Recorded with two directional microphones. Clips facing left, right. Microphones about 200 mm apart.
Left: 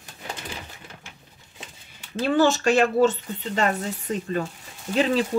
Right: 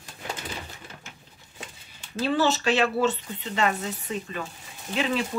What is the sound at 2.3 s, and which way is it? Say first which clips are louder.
Speech: left 4 dB; 45° left (ahead or behind).